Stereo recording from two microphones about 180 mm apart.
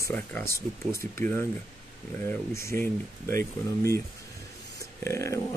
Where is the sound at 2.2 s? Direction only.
15° left (ahead or behind).